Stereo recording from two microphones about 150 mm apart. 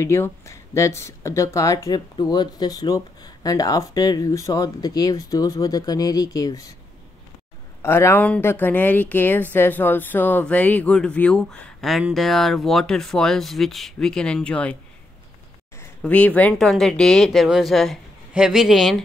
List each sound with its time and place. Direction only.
0.0 s speech: 15° left (ahead or behind)
7.8 s a woman's voice: 15° left (ahead or behind)
16.0 s speech: 10° left (ahead or behind)